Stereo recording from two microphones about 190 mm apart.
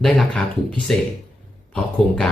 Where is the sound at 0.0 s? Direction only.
5° left (ahead or behind).